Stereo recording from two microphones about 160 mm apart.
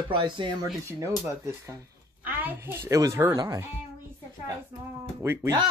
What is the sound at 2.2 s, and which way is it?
A child's voice, 15° right (ahead or behind).